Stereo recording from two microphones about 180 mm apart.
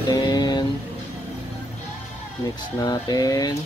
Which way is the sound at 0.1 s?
20° left (ahead or behind).